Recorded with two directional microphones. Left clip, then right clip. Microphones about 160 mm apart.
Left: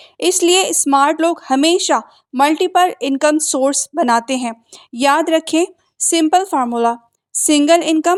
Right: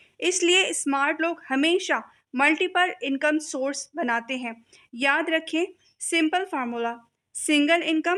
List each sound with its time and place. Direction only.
0.0 s speech: 45° left (ahead or behind)